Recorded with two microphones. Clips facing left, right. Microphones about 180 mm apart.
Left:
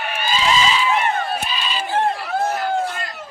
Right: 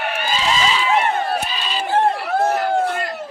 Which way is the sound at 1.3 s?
40° right (ahead or behind).